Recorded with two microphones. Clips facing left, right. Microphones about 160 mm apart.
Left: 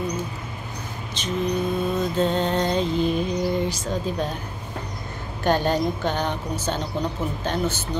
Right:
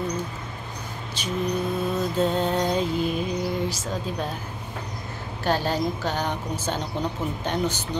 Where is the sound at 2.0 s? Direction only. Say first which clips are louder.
Even; 5° right (ahead or behind).